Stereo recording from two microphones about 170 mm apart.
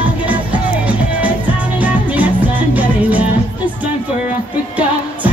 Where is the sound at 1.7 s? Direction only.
10° right (ahead or behind).